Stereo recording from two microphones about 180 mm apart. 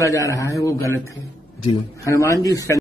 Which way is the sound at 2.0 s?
15° left (ahead or behind).